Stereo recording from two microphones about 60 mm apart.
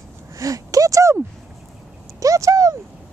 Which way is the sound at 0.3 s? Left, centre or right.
Right.